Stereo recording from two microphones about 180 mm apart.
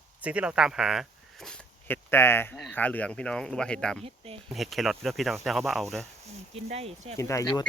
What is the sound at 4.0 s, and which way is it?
Speech, 30° right (ahead or behind).